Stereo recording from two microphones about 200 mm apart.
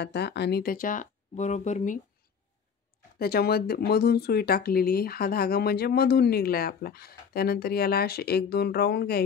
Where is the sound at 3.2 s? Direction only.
50° left (ahead or behind).